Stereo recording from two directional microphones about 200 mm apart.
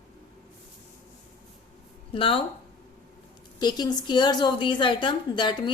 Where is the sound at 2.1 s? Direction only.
25° left (ahead or behind).